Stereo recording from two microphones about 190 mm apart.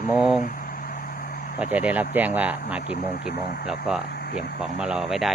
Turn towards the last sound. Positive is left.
turn(degrees=0)  # may be behind; listen again after turning